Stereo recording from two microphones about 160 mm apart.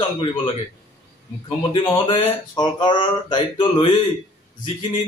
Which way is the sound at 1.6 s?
30° left (ahead or behind).